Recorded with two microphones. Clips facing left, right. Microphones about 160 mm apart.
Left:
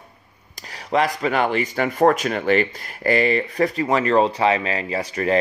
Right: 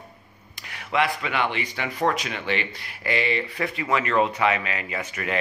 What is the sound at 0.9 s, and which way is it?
Speech, 40° left (ahead or behind).